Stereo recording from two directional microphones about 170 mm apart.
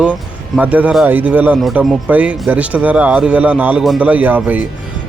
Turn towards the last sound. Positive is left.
turn(degrees=-10)  # may be behind; listen again after turning